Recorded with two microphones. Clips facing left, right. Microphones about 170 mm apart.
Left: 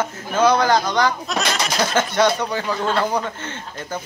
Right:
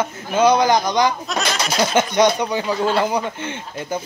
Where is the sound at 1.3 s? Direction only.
Centre (ahead or behind).